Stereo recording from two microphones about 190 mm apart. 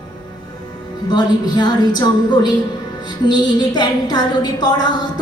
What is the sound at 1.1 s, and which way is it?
A woman's voice, 20° left (ahead or behind).